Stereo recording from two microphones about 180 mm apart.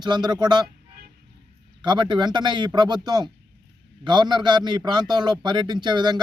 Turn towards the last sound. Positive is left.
turn(degrees=-25)  # may be behind; listen again after turning